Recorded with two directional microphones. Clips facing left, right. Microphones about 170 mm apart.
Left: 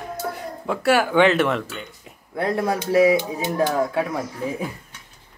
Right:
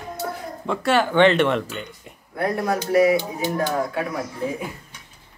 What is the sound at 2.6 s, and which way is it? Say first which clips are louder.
Speech: left 1 dB; 25° left (ahead or behind).